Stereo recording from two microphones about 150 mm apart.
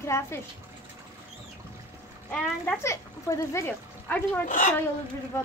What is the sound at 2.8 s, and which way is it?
Speech, 20° left (ahead or behind).